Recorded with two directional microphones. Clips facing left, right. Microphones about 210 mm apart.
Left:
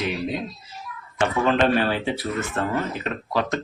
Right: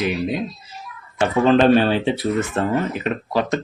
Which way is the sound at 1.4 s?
30° right (ahead or behind).